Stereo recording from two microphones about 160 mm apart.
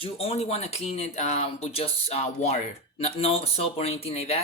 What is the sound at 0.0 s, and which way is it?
Speech, 40° left (ahead or behind).